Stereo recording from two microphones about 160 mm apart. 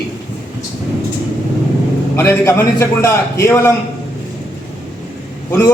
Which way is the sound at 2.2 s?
15° left (ahead or behind).